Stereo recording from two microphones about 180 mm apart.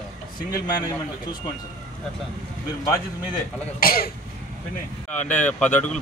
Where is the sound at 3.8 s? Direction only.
55° left (ahead or behind).